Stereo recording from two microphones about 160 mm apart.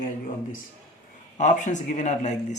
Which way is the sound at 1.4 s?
50° left (ahead or behind).